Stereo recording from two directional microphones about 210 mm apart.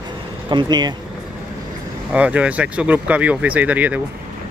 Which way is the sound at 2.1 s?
5° right (ahead or behind).